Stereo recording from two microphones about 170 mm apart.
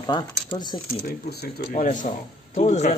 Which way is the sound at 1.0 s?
65° left (ahead or behind).